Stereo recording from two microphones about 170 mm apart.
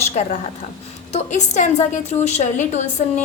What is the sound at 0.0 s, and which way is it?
A woman's voice, 40° left (ahead or behind).